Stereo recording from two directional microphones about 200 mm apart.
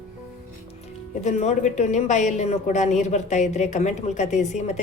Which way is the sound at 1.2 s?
35° left (ahead or behind).